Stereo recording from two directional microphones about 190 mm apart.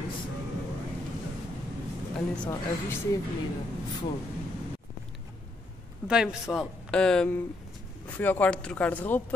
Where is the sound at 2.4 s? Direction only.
10° left (ahead or behind).